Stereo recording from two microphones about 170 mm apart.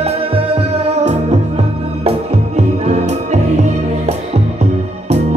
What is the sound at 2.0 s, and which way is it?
Music, 40° right (ahead or behind).